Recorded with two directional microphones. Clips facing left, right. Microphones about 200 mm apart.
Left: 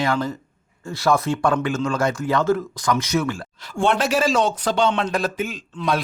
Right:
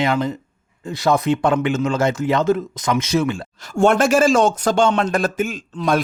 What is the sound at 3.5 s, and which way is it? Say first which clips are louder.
Speech: right 6 dB; 45° right (ahead or behind).